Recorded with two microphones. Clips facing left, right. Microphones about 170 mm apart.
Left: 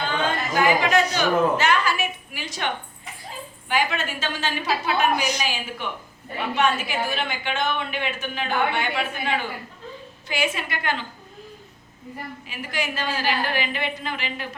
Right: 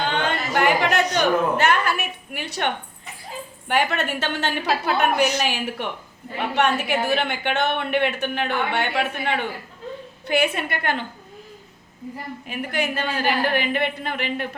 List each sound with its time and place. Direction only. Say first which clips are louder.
0.1 s a woman's voice: right 1 dB; 65° right (ahead or behind)
12.5 s a woman's voice: right 5 dB; 55° right (ahead or behind)